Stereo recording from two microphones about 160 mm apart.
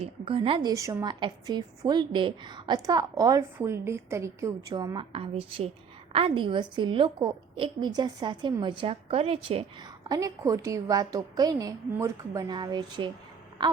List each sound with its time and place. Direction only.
0.0 s a woman's voice: 35° right (ahead or behind)
0.7 s a woman's voice: 20° right (ahead or behind)